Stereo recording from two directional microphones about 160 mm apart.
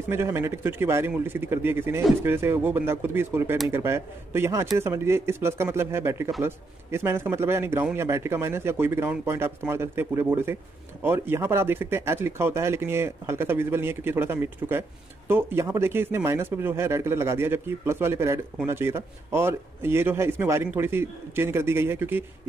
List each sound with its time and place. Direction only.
0.1 s a man's voice: 15° right (ahead or behind)